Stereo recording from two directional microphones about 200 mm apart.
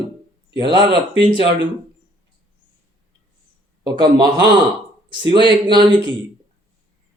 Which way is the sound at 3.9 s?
20° right (ahead or behind).